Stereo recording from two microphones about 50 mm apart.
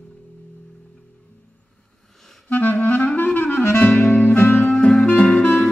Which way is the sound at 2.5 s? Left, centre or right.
Left.